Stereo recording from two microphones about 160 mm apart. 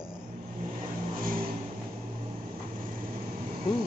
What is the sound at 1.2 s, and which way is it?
Vehicle, 60° right (ahead or behind).